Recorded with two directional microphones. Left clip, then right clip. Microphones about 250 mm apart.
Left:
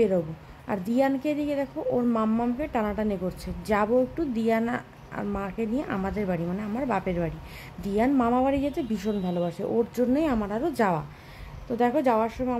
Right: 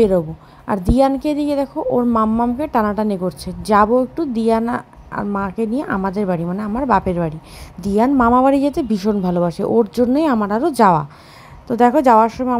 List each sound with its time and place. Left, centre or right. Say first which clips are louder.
0.7 s a woman's voice: right 10 dB; right